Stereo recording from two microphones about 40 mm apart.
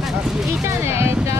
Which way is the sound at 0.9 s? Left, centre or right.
Right.